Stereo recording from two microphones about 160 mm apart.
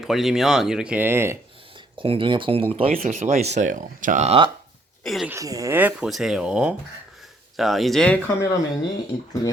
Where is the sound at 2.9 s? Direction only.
55° right (ahead or behind).